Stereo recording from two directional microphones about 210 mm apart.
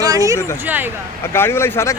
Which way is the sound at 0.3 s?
15° left (ahead or behind).